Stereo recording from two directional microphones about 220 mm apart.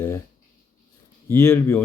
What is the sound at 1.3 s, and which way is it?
Speech, 10° left (ahead or behind).